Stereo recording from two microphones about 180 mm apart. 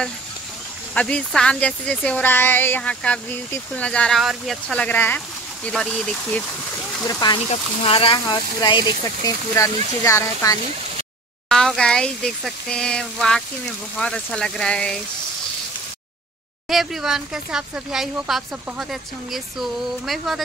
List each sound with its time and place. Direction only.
0.9 s speech: 5° left (ahead or behind)
7.1 s speech: 20° left (ahead or behind)
7.4 s speech: 30° left (ahead or behind)
11.4 s speech: 5° left (ahead or behind)
16.6 s speech: centre (ahead or behind)